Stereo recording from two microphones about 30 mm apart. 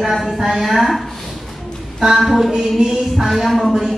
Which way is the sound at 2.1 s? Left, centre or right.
Centre.